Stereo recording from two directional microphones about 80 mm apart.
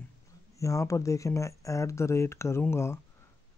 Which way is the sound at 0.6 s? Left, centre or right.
Left.